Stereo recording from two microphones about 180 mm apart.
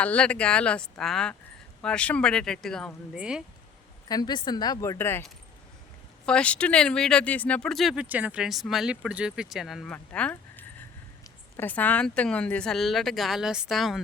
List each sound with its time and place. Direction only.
0.0 s speech: 5° left (ahead or behind)
4.1 s speech: 25° left (ahead or behind)
6.2 s speech: 5° left (ahead or behind)